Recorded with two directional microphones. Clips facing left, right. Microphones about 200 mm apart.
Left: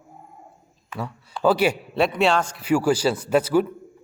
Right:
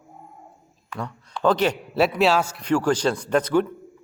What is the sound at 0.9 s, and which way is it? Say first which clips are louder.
Speech: left 1 dB; 5° left (ahead or behind).